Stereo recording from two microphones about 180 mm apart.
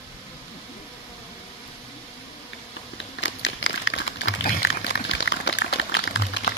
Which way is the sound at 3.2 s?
90° left.